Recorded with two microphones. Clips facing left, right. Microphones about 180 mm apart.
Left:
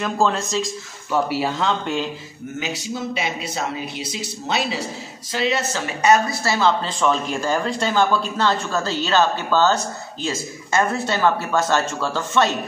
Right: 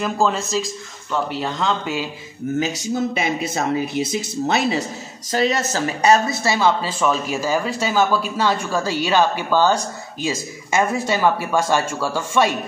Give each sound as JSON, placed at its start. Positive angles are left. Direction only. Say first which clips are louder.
{"t": 0.0, "sound": "speech", "louder": "even", "side_deg": 0}
{"t": 2.6, "sound": "speech", "louder": "right 3 dB", "side_deg": -45}
{"t": 6.1, "sound": "speech", "louder": "right 1 dB", "side_deg": -25}
{"t": 6.8, "sound": "speech", "louder": "even", "side_deg": -5}